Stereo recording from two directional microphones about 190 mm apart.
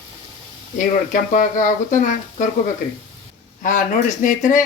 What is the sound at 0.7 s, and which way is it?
Speech, 45° left (ahead or behind).